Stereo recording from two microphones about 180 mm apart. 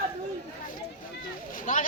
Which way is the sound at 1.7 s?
45° left (ahead or behind).